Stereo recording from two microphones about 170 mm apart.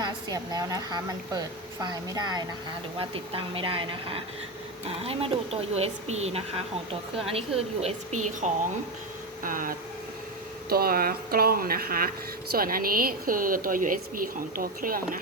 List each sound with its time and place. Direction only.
0.0 s a woman's voice: 20° right (ahead or behind); by 8.4 s 40° right (ahead or behind)
9.4 s speech: 55° right (ahead or behind)